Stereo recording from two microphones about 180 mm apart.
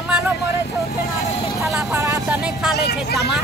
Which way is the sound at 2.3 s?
5° right (ahead or behind).